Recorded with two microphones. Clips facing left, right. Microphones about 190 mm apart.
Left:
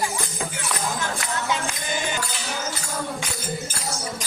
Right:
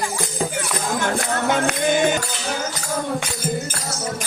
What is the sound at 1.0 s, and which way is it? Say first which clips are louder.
Music: right 6 dB; 60° right (ahead or behind).